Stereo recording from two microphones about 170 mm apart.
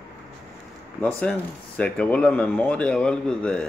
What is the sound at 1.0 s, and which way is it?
Speech, 5° left (ahead or behind).